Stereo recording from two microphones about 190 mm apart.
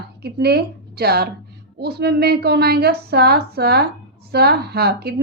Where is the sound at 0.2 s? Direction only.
55° right (ahead or behind).